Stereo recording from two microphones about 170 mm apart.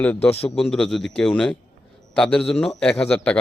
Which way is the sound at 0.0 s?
10° left (ahead or behind).